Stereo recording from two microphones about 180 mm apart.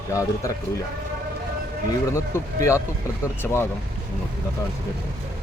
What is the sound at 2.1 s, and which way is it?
Speech, 15° left (ahead or behind).